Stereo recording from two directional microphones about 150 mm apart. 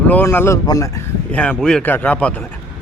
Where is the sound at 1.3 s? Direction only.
10° left (ahead or behind).